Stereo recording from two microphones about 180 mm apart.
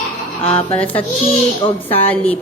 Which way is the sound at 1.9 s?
10° left (ahead or behind).